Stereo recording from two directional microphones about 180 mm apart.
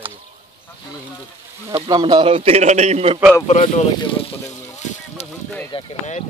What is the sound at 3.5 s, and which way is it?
Speech, 40° left (ahead or behind).